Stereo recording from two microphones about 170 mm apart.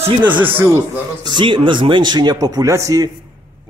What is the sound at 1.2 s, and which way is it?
Speech, 30° right (ahead or behind).